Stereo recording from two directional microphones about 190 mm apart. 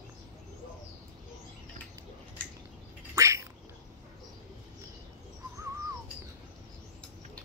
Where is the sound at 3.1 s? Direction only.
15° right (ahead or behind).